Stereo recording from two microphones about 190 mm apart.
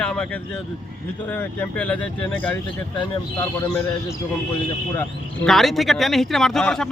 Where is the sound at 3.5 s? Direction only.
15° left (ahead or behind).